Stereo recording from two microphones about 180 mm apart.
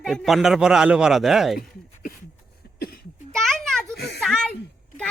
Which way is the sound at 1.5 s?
50° left (ahead or behind).